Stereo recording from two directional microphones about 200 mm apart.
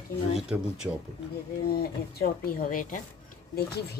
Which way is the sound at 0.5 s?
10° right (ahead or behind).